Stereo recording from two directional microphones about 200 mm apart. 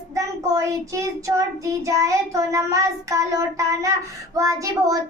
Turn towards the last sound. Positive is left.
turn(degrees=-15)  # may be behind; listen again after turning